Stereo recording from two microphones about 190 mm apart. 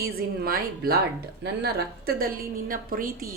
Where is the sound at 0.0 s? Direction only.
50° right (ahead or behind).